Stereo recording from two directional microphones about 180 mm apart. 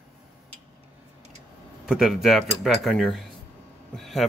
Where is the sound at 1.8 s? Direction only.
5° right (ahead or behind).